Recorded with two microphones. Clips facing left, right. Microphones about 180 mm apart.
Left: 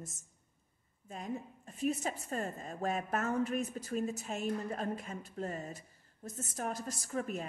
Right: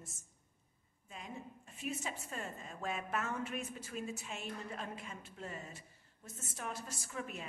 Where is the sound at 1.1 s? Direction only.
45° left (ahead or behind).